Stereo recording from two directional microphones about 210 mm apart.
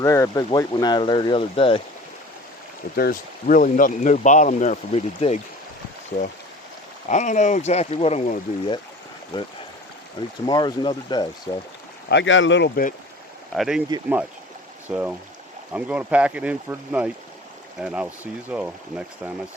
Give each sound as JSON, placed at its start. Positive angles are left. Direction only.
{"t": 0.0, "sound": "speech", "side_deg": 15}
{"t": 2.9, "sound": "speech", "side_deg": 45}
{"t": 7.1, "sound": "speech", "side_deg": 35}
{"t": 10.2, "sound": "speech", "side_deg": 20}
{"t": 12.0, "sound": "speech", "side_deg": 60}
{"t": 13.5, "sound": "speech", "side_deg": 0}